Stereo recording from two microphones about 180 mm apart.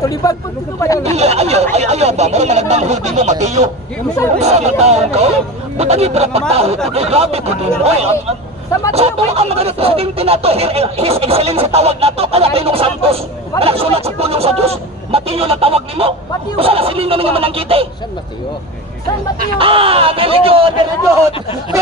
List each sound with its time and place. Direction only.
0.0 s speech: 20° left (ahead or behind)
1.1 s speech: 35° right (ahead or behind)
19.6 s speech: 30° right (ahead or behind)